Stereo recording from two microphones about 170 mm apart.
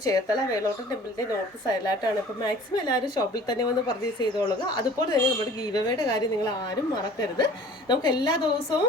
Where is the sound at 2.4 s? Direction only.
25° left (ahead or behind).